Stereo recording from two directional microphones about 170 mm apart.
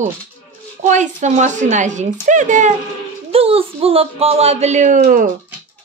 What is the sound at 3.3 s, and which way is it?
Speech, 35° right (ahead or behind).